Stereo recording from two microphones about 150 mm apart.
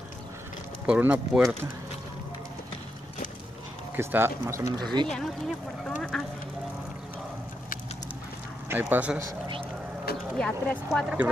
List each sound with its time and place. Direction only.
0.8 s speech: 10° right (ahead or behind)
3.9 s speech: 15° right (ahead or behind)
5.0 s speech: 5° left (ahead or behind)
8.6 s speech: 15° right (ahead or behind)
10.3 s speech: 10° left (ahead or behind)
10.9 s speech: 5° right (ahead or behind)